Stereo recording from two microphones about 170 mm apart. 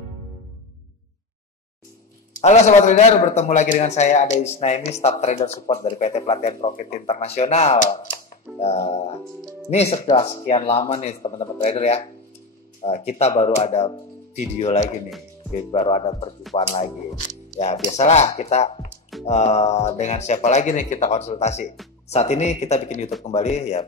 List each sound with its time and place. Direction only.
2.4 s a man's voice: 40° left (ahead or behind)
5.7 s speech: 30° left (ahead or behind)
5.9 s a man's voice: 40° left (ahead or behind)
8.3 s a man's voice: 40° left (ahead or behind)
17.9 s a man's voice: 40° left (ahead or behind)